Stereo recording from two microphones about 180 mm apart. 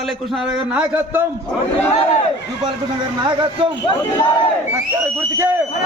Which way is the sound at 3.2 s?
25° right (ahead or behind).